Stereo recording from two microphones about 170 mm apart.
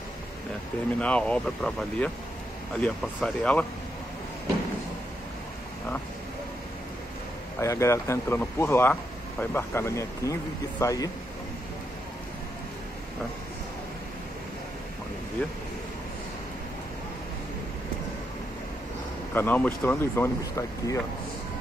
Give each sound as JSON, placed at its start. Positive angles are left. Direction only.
{"t": 0.9, "sound": "speech", "side_deg": 10}
{"t": 7.6, "sound": "speech", "side_deg": 15}
{"t": 19.3, "sound": "speech", "side_deg": 10}